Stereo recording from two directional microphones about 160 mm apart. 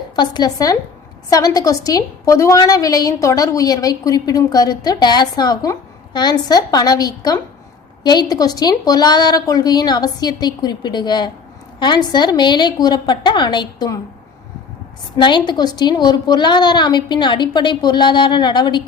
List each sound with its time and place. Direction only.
0.2 s a woman's voice: 25° left (ahead or behind)
15.2 s a woman's voice: 30° left (ahead or behind)